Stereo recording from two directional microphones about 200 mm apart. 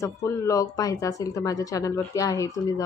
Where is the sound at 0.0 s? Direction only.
15° left (ahead or behind).